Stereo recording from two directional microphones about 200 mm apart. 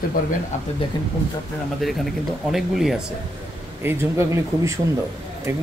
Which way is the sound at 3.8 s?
10° right (ahead or behind).